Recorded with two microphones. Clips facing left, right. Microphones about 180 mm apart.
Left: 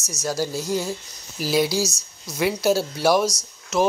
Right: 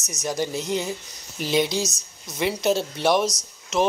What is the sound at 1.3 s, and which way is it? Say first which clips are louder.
Speech: left 1 dB; 5° left (ahead or behind).